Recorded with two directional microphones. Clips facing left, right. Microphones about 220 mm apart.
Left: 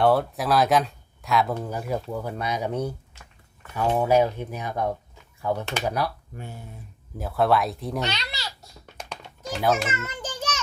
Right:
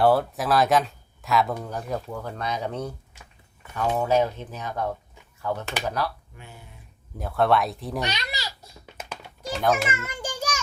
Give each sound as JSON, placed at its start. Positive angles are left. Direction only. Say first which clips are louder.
{"t": 0.0, "sound": "speech", "louder": "even", "side_deg": 0}
{"t": 6.3, "sound": "speech", "louder": "left 7 dB", "side_deg": 40}
{"t": 7.2, "sound": "speech", "louder": "even", "side_deg": 0}
{"t": 8.0, "sound": "babbling", "louder": "even", "side_deg": -15}
{"t": 9.0, "sound": "a sound", "louder": "even", "side_deg": 0}